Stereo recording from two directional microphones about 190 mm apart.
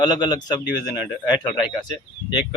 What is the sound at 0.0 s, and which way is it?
Speech, 20° left (ahead or behind).